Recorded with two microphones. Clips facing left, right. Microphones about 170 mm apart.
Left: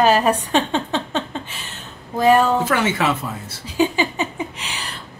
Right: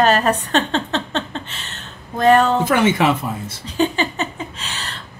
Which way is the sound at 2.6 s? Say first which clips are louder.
Right 4 dB; 20° right (ahead or behind).